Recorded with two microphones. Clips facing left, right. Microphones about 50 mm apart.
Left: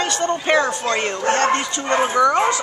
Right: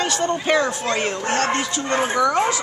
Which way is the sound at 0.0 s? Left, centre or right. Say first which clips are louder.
Left 1 dB; centre.